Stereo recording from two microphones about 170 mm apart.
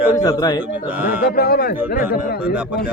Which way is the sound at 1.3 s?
65° left (ahead or behind).